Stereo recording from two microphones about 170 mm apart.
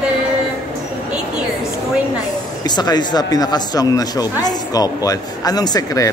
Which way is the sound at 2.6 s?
25° left (ahead or behind).